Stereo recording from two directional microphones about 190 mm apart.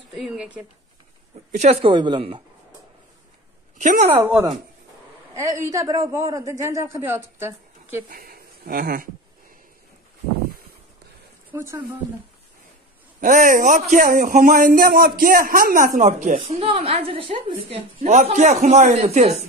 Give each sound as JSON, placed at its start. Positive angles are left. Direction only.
{"t": 0.1, "sound": "speech", "side_deg": -5}
{"t": 1.5, "sound": "speech", "side_deg": -35}
{"t": 3.8, "sound": "a woman's voice", "side_deg": -40}
{"t": 4.1, "sound": "a man's voice", "side_deg": -10}
{"t": 8.1, "sound": "speech", "side_deg": -50}
{"t": 11.5, "sound": "speech", "side_deg": -15}
{"t": 13.2, "sound": "a man's voice", "side_deg": -45}
{"t": 16.0, "sound": "a woman's voice", "side_deg": -40}